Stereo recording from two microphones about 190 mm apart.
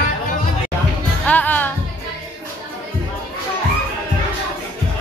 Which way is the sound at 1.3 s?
10° left (ahead or behind).